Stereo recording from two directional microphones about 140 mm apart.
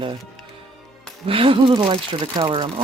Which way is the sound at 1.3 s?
40° right (ahead or behind).